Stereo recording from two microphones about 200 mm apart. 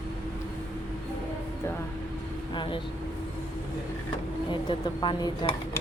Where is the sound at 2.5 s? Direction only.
25° left (ahead or behind).